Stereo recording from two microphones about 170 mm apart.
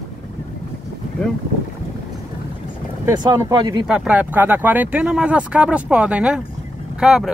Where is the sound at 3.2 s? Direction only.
25° right (ahead or behind).